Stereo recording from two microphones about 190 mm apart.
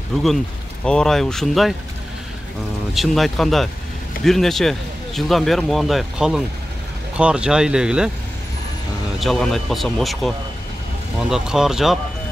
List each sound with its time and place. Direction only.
0.8 s speech: 5° left (ahead or behind)
2.9 s speech: centre (ahead or behind)
9.2 s speech: centre (ahead or behind)